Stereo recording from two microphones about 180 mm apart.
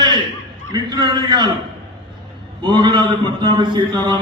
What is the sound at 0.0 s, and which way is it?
Chuckle, 25° right (ahead or behind).